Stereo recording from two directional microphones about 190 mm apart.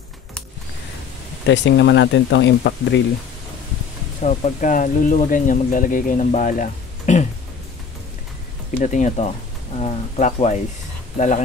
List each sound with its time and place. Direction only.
1.5 s speech: 70° left (ahead or behind)
4.2 s speech: 40° left (ahead or behind)
8.7 s speech: 40° left (ahead or behind)